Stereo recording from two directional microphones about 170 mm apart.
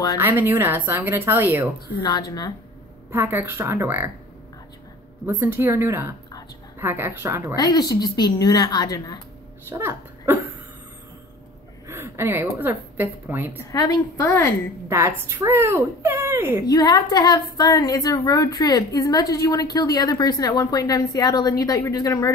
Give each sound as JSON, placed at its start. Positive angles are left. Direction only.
{"t": 0.2, "sound": "speech", "side_deg": -10}
{"t": 2.0, "sound": "a woman's voice", "side_deg": 25}
{"t": 3.1, "sound": "speech", "side_deg": -15}
{"t": 5.2, "sound": "speech", "side_deg": -10}
{"t": 7.5, "sound": "a woman's voice", "side_deg": 20}
{"t": 9.7, "sound": "speech", "side_deg": -15}
{"t": 11.9, "sound": "a woman's voice", "side_deg": -15}
{"t": 13.7, "sound": "a woman's voice", "side_deg": 20}
{"t": 14.9, "sound": "speech", "side_deg": -15}
{"t": 16.6, "sound": "a woman's voice", "side_deg": 25}